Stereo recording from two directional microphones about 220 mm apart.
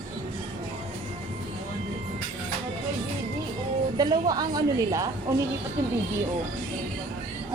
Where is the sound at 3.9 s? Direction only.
15° right (ahead or behind).